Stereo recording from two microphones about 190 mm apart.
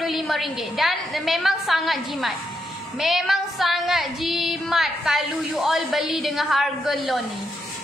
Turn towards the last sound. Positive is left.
turn(degrees=0)  # may be behind; listen again after turning